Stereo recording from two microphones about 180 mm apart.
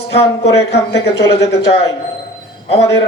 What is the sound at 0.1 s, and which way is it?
Speech, 70° left (ahead or behind).